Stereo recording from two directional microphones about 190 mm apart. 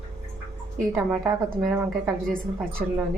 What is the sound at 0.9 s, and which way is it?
Speech, 10° right (ahead or behind).